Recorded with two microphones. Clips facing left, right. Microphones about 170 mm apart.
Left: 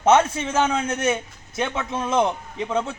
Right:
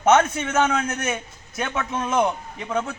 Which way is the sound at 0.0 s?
30° left (ahead or behind).